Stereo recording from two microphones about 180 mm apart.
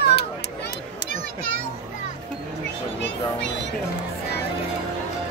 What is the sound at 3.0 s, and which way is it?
Speech, 75° left (ahead or behind).